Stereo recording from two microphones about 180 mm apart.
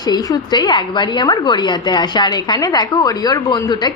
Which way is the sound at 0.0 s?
20° left (ahead or behind).